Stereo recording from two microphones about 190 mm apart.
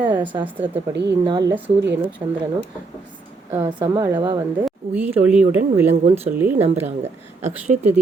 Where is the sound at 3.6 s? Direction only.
25° right (ahead or behind).